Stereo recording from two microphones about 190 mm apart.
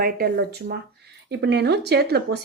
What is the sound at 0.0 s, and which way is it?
Speech, 55° right (ahead or behind).